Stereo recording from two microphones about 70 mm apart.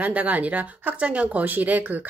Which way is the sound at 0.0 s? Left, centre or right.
Right.